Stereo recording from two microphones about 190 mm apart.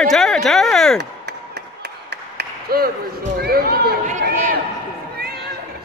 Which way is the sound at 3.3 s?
55° right (ahead or behind).